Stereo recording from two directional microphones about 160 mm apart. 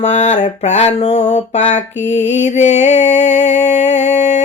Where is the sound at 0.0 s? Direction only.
45° left (ahead or behind).